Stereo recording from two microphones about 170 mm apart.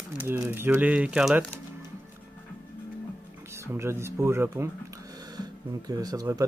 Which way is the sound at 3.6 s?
15° right (ahead or behind).